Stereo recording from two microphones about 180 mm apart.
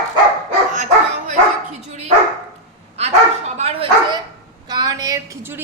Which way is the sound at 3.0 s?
35° right (ahead or behind).